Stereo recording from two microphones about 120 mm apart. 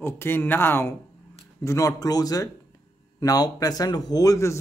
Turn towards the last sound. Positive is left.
turn(degrees=25)  # may be behind; listen again after turning